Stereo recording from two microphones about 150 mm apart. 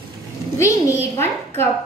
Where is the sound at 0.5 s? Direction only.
20° left (ahead or behind).